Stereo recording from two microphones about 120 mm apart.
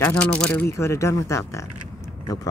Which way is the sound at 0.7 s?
25° left (ahead or behind).